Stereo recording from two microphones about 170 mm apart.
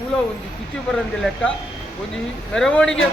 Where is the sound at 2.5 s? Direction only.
5° left (ahead or behind).